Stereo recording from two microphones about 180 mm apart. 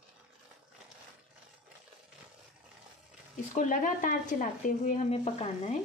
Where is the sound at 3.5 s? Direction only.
45° left (ahead or behind).